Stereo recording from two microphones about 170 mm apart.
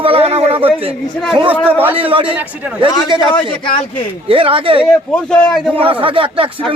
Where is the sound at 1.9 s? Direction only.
30° right (ahead or behind).